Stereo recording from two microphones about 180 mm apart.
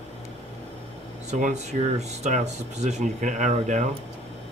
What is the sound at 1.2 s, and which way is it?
Speech, 40° right (ahead or behind).